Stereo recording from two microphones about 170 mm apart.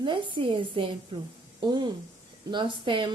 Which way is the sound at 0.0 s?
30° right (ahead or behind).